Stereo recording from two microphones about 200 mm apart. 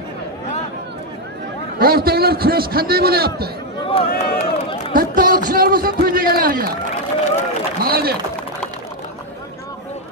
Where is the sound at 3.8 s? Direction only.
25° left (ahead or behind).